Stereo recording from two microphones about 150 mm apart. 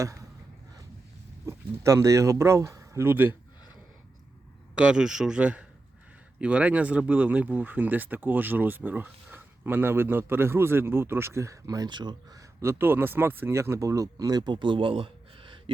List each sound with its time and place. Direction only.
0.0 s a sound: 20° right (ahead or behind)
1.5 s speech: 20° right (ahead or behind)
4.8 s speech: 5° right (ahead or behind); by 15.7 s 35° right (ahead or behind)